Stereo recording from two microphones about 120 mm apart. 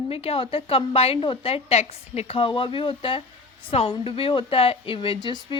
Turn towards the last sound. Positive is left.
turn(degrees=40)  # may be behind; listen again after turning